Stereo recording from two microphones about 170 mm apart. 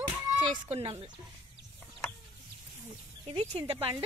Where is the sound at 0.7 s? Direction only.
35° right (ahead or behind).